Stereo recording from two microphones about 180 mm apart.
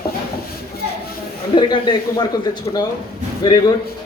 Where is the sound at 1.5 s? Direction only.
25° left (ahead or behind).